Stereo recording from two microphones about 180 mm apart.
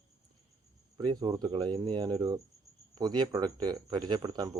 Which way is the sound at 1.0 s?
25° right (ahead or behind).